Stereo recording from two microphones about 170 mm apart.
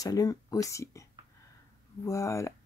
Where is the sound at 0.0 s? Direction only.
20° left (ahead or behind).